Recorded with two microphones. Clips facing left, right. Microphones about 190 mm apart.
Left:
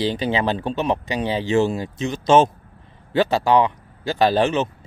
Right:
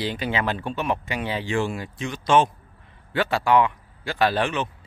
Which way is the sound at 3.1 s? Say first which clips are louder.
Left 3 dB; 25° left (ahead or behind).